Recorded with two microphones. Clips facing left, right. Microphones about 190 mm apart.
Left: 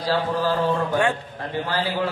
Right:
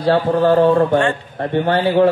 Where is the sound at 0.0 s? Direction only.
60° right (ahead or behind).